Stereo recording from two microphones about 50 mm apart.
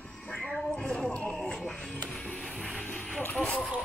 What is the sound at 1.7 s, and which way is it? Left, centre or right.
Music, centre.